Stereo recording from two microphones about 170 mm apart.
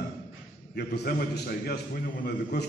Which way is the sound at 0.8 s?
70° left (ahead or behind).